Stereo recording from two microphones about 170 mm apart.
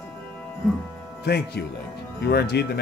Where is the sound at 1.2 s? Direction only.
75° left (ahead or behind).